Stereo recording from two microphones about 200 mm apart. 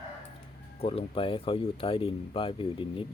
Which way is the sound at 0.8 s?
30° left (ahead or behind).